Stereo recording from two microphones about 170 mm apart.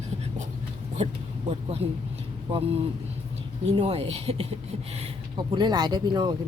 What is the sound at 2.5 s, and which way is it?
Speech, 30° right (ahead or behind).